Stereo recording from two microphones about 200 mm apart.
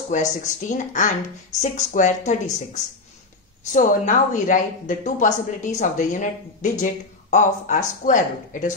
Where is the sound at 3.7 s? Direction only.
40° left (ahead or behind).